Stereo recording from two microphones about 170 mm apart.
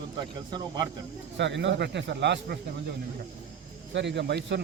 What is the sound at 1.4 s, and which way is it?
Speech, 90° right.